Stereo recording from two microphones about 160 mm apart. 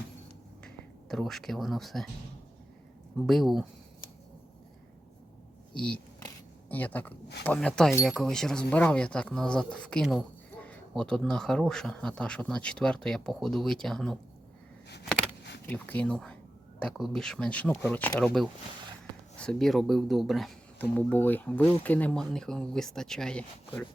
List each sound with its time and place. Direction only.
0.6 s a sound: 5° left (ahead or behind)
3.2 s speech: centre (ahead or behind)
5.7 s speech: 5° left (ahead or behind)
15.6 s speech: 10° left (ahead or behind)